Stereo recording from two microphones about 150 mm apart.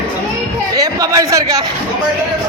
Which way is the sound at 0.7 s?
25° right (ahead or behind).